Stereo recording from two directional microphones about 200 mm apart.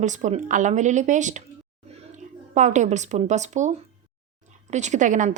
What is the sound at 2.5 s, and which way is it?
A woman's voice, 35° right (ahead or behind).